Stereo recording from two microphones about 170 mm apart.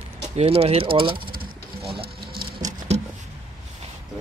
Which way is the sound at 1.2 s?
60° right (ahead or behind).